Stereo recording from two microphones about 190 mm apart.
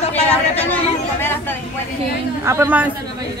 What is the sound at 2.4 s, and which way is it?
Speech, 10° right (ahead or behind).